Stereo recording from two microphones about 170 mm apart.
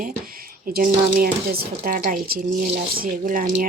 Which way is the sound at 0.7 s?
60° right (ahead or behind).